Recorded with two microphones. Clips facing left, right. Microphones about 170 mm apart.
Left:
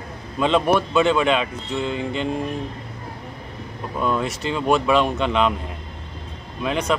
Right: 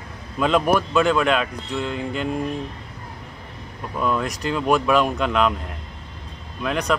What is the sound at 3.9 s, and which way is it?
Speech, centre (ahead or behind).